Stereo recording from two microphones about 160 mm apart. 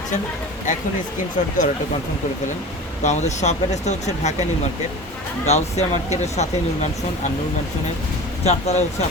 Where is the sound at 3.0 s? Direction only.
45° left (ahead or behind).